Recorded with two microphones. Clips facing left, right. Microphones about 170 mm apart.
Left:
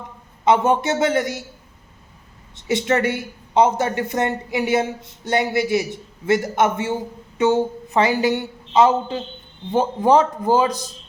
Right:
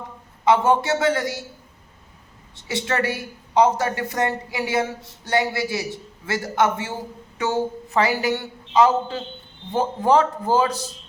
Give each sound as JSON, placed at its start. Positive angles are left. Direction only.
{"t": 0.4, "sound": "a woman's voice", "side_deg": 20}
{"t": 2.6, "sound": "a woman's voice", "side_deg": 20}